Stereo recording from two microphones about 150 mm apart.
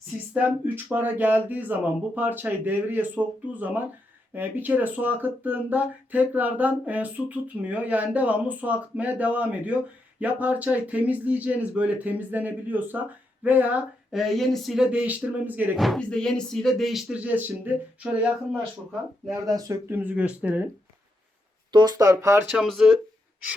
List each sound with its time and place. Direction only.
0.3 s speech: 10° right (ahead or behind)
15.8 s speech: 5° left (ahead or behind)
19.3 s speech: 25° right (ahead or behind)
20.0 s speech: 10° right (ahead or behind)
21.7 s speech: 30° right (ahead or behind)
22.5 s speech: centre (ahead or behind)